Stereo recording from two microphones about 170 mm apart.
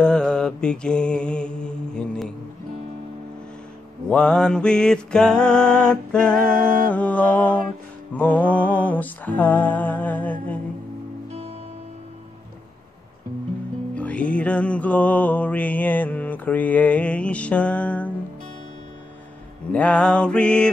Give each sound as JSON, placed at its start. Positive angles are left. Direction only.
{"t": 0.0, "sound": "mantra", "side_deg": 5}
{"t": 4.1, "sound": "mantra", "side_deg": 5}
{"t": 6.4, "sound": "music", "side_deg": -55}
{"t": 6.9, "sound": "music", "side_deg": 10}
{"t": 13.9, "sound": "music", "side_deg": 10}
{"t": 19.7, "sound": "mantra", "side_deg": 5}